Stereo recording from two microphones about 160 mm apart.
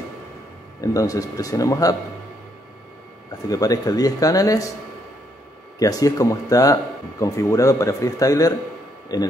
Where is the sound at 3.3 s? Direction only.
20° left (ahead or behind).